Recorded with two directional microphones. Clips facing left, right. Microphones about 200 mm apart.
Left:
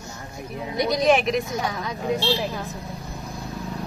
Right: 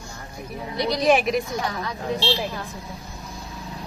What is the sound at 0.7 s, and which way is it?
Speech, 20° left (ahead or behind).